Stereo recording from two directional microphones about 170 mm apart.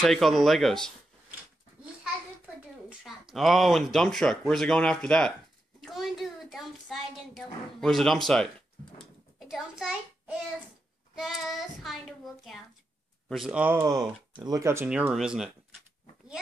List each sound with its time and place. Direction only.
0.0 s a woman's voice: centre (ahead or behind)
3.0 s a woman's voice: centre (ahead or behind)
13.3 s a woman's voice: 5° right (ahead or behind)